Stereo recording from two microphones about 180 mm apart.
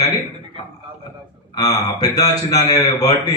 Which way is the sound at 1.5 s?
20° left (ahead or behind).